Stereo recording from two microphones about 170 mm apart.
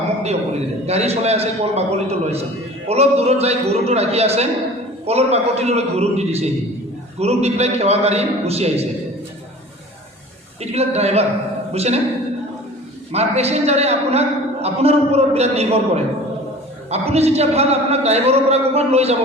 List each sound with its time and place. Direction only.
0.2 s a man's voice: 40° right (ahead or behind)
10.6 s a man's voice: 40° right (ahead or behind)
13.1 s a man's voice: 40° right (ahead or behind)